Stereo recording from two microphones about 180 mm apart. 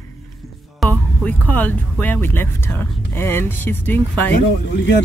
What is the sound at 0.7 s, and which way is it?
Speech, 10° left (ahead or behind).